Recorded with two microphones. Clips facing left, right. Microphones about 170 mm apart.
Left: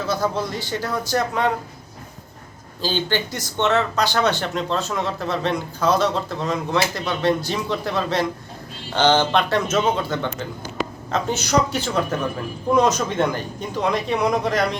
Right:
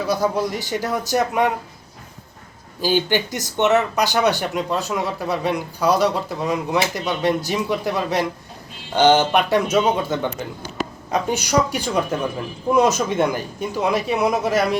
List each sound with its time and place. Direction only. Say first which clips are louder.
0.1 s speech: right 3 dB; 15° right (ahead or behind)
2.8 s speech: right 4 dB; 15° right (ahead or behind)